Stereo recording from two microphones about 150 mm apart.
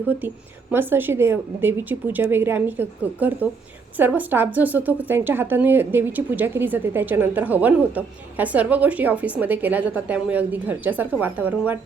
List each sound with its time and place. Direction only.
0.7 s a woman's voice: 15° right (ahead or behind)